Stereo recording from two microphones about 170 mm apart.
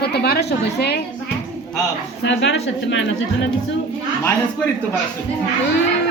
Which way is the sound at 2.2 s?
90° left.